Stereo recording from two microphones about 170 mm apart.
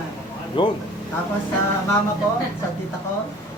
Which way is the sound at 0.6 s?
30° left (ahead or behind).